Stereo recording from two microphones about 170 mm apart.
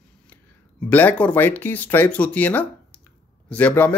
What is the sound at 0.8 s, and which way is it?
Speech, 10° left (ahead or behind).